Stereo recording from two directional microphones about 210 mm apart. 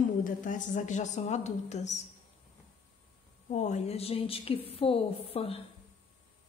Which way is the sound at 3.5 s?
35° left (ahead or behind).